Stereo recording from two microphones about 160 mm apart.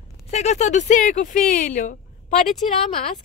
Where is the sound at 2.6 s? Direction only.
40° left (ahead or behind).